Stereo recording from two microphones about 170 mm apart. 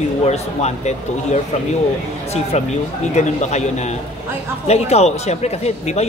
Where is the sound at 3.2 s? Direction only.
45° left (ahead or behind).